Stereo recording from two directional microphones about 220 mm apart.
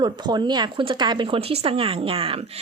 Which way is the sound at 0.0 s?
20° right (ahead or behind).